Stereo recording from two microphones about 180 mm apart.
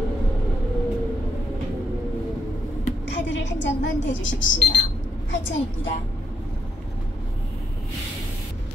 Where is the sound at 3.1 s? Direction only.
80° left.